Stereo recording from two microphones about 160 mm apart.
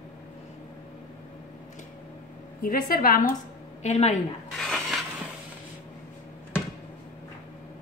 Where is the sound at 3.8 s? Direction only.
45° left (ahead or behind).